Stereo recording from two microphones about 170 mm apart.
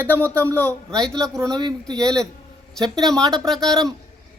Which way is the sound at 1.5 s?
25° right (ahead or behind).